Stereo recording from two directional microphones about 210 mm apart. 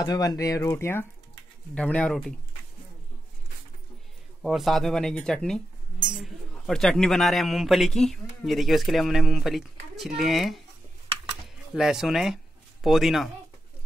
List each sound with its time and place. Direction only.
0.0 s a man's voice: 20° left (ahead or behind); by 2.3 s 5° left (ahead or behind)
4.4 s a man's voice: centre (ahead or behind)